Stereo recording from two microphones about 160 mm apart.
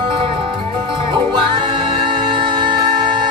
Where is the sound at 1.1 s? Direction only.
30° right (ahead or behind).